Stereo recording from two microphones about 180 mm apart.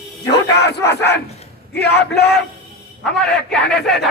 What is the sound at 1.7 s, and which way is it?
Speech, 65° left (ahead or behind).